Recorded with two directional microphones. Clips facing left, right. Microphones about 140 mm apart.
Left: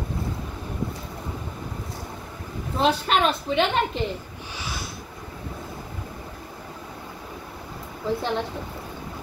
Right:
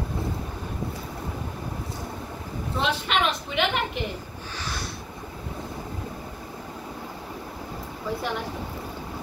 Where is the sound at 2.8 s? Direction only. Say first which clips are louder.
Left 4 dB; 35° left (ahead or behind).